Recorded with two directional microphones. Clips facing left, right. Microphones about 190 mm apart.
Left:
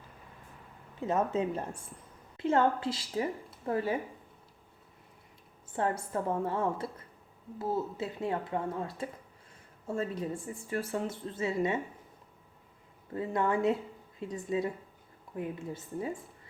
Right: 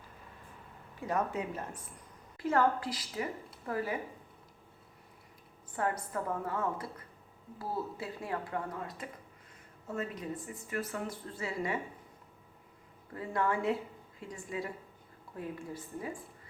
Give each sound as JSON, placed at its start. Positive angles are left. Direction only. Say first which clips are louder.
{"t": 0.9, "sound": "speech", "louder": "left 4 dB", "side_deg": 25}
{"t": 5.7, "sound": "speech", "louder": "left 3 dB", "side_deg": 25}
{"t": 13.1, "sound": "speech", "louder": "left 3 dB", "side_deg": 20}